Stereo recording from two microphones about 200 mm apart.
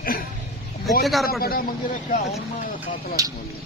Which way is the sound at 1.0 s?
Centre (ahead or behind).